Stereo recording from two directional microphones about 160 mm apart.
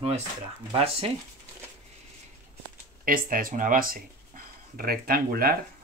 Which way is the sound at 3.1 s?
60° right (ahead or behind).